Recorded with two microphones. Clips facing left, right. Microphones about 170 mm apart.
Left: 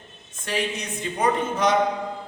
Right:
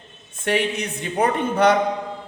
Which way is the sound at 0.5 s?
60° right (ahead or behind).